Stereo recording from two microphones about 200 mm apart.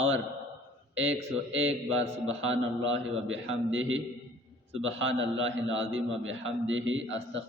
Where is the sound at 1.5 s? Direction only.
75° right (ahead or behind).